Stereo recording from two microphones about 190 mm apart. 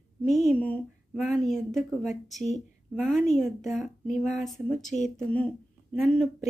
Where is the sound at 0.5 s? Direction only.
5° left (ahead or behind).